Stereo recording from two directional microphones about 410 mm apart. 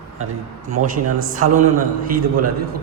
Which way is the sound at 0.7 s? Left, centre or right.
Centre.